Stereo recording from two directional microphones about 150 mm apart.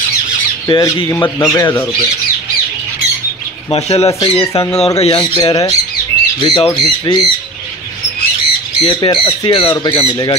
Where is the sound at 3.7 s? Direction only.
45° left (ahead or behind).